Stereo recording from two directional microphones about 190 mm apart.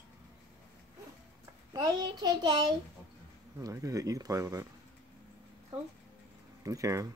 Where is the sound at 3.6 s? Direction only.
20° right (ahead or behind).